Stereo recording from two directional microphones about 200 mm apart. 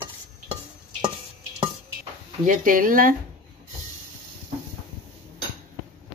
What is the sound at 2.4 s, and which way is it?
Speech, 40° right (ahead or behind).